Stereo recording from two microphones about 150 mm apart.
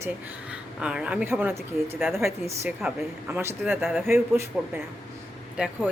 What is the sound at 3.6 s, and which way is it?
A woman's voice, 5° right (ahead or behind).